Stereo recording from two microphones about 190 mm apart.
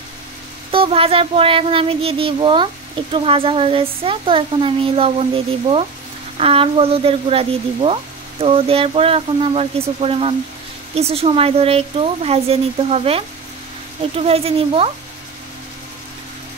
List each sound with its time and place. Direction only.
0.7 s child singing: 30° right (ahead or behind)
6.3 s speech: 30° right (ahead or behind)